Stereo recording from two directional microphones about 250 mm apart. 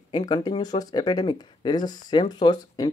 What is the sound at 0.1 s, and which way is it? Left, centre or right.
Speech, centre.